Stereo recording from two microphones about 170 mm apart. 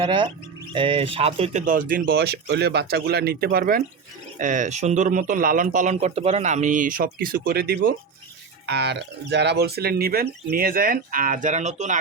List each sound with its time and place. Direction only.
0.0 s speech: 30° right (ahead or behind); by 3.8 s 60° right (ahead or behind)
4.4 s speech: 50° right (ahead or behind); by 7.9 s 65° right (ahead or behind)
8.6 s speech: 80° right; by 11.9 s 45° right (ahead or behind)